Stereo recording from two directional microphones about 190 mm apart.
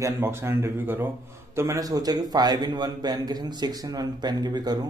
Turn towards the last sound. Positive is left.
turn(degrees=-20)  # may be behind; listen again after turning